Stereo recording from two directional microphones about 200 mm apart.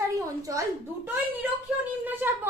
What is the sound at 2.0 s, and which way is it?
Speech, 10° right (ahead or behind).